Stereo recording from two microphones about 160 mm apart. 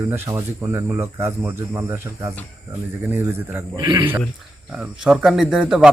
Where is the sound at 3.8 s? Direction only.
30° right (ahead or behind).